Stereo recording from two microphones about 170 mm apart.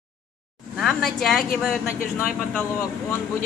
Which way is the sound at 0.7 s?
Centre (ahead or behind).